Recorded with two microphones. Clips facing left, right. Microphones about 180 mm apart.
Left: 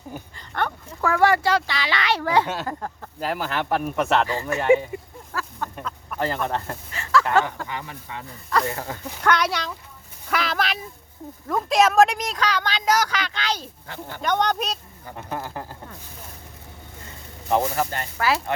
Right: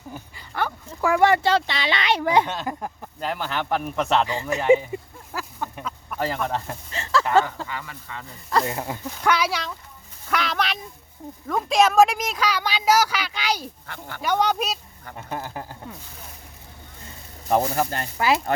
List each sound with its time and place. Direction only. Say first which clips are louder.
0.3 s speech: even; 5° right (ahead or behind)
3.2 s a man's voice: left 1 dB; 5° left (ahead or behind)
4.3 s a sound: even; 15° right (ahead or behind)
5.7 s chicken: even; 5° right (ahead or behind)
6.9 s a sound: left 2 dB; 25° right (ahead or behind)
7.4 s speech: left 1 dB; 20° left (ahead or behind)
8.4 s speech: right 1 dB; 25° right (ahead or behind); by 9.7 s centre (ahead or behind)
10.2 s a sound: even; centre (ahead or behind)
11.4 s a man's voice: even; centre (ahead or behind)
17.5 s speech: right 1 dB; 40° right (ahead or behind)
18.2 s speech: right 2 dB; 20° right (ahead or behind)